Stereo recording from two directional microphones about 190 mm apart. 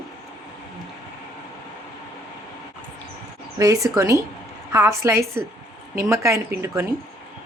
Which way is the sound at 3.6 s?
15° right (ahead or behind).